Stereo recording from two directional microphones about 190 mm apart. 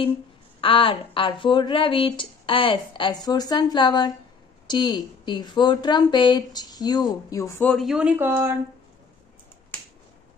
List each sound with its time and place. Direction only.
0.6 s speech: 25° left (ahead or behind)
7.7 s speech: centre (ahead or behind)